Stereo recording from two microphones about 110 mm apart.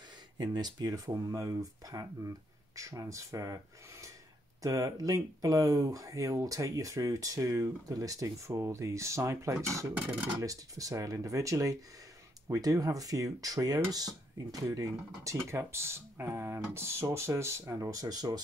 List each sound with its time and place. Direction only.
0.4 s speech: 40° right (ahead or behind)
4.6 s speech: 30° right (ahead or behind)